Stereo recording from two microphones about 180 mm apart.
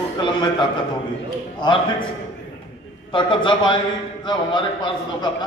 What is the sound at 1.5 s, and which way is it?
Speech, 25° left (ahead or behind).